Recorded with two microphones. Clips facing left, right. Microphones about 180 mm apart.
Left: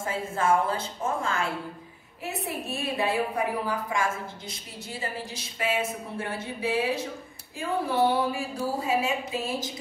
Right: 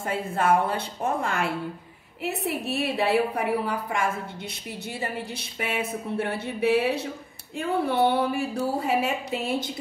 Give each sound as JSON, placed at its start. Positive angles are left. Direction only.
{"t": 0.0, "sound": "a woman's voice", "side_deg": -65}
{"t": 8.1, "sound": "a woman's voice", "side_deg": -65}